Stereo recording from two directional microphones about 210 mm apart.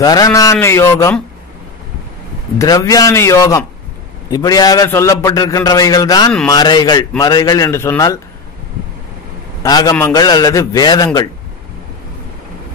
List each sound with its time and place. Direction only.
0.0 s a man's voice: 15° left (ahead or behind)
2.6 s a man's voice: 15° left (ahead or behind)
9.6 s a man's voice: 20° left (ahead or behind)